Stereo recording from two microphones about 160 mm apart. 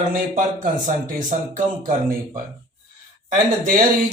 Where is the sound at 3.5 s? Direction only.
55° right (ahead or behind).